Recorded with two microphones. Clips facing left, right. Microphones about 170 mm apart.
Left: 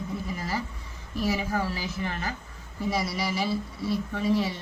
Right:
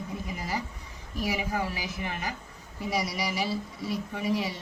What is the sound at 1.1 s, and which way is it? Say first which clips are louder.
Speech: left 2 dB; 15° right (ahead or behind).